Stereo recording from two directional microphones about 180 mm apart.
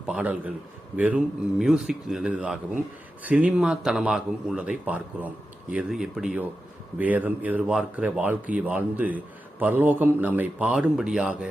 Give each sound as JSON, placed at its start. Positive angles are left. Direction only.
{"t": 0.0, "sound": "a man's voice", "side_deg": -5}